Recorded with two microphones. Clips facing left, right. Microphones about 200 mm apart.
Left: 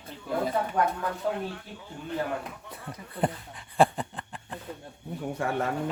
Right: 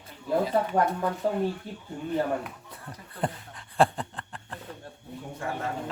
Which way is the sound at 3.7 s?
5° left (ahead or behind).